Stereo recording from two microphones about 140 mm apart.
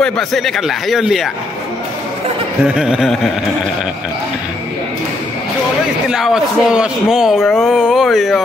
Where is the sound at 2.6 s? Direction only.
5° right (ahead or behind).